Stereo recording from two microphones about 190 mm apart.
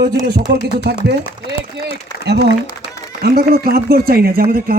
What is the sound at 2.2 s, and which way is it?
A man's voice, 60° right (ahead or behind).